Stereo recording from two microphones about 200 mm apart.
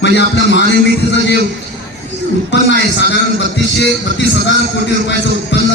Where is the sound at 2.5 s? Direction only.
60° left (ahead or behind).